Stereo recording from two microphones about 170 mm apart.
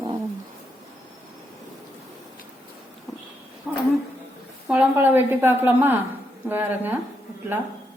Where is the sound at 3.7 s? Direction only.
10° right (ahead or behind).